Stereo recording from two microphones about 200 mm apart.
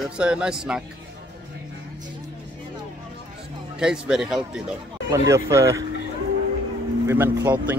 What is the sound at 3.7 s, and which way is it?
Speech, 5° right (ahead or behind).